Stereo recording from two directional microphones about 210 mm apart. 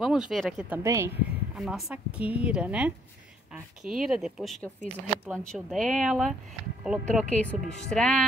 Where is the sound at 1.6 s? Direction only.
Centre (ahead or behind).